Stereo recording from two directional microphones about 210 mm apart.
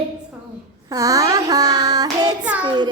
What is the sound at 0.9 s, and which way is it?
Child singing, 15° right (ahead or behind).